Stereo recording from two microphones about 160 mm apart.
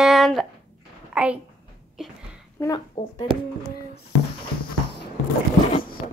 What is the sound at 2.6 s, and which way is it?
Speech, 25° left (ahead or behind).